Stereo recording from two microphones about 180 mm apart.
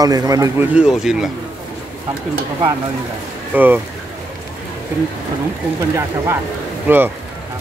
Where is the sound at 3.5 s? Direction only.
10° right (ahead or behind).